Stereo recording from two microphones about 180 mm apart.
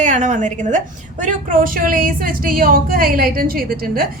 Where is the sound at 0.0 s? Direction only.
45° right (ahead or behind).